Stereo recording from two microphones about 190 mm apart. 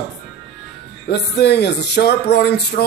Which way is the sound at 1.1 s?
60° left (ahead or behind).